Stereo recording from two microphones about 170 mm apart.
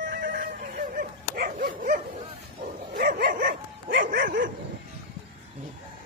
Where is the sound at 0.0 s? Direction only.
55° right (ahead or behind).